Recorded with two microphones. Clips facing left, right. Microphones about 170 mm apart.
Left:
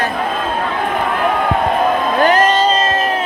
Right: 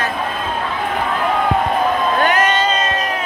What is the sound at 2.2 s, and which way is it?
Crowd, 35° left (ahead or behind).